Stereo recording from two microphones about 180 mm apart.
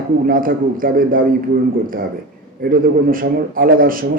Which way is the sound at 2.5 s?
55° right (ahead or behind).